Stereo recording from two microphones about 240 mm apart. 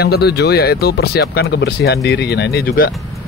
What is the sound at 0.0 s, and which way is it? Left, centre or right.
Speech, left.